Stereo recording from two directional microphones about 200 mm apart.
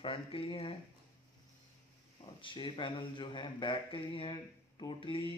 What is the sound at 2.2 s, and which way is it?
A man's voice, 25° left (ahead or behind).